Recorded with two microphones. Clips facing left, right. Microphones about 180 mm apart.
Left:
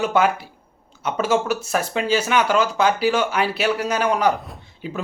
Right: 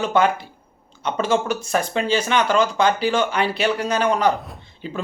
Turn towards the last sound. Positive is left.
turn(degrees=5)  # may be behind; listen again after turning